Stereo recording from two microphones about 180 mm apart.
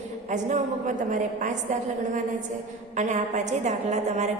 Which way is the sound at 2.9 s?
40° right (ahead or behind).